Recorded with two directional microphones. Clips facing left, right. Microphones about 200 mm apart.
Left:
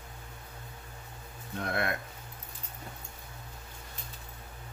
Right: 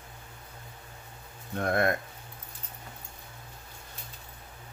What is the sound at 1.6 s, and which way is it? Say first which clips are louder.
Speech: right 6 dB; 45° right (ahead or behind).